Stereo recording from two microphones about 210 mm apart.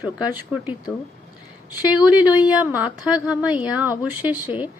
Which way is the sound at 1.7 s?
20° left (ahead or behind).